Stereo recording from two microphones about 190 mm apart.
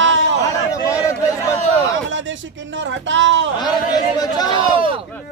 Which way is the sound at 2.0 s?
80° right.